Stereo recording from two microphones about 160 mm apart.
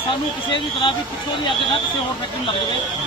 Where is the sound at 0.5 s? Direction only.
30° left (ahead or behind).